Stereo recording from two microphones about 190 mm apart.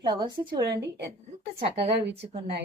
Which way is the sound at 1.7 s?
65° right (ahead or behind).